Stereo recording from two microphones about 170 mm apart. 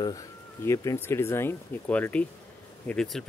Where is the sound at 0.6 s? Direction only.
15° left (ahead or behind).